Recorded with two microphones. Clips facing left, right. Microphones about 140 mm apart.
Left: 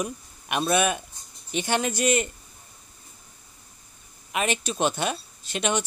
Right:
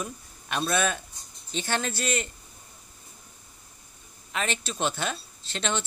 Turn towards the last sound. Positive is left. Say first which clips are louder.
# left 4 dB
turn(degrees=15)  # may be behind; listen again after turning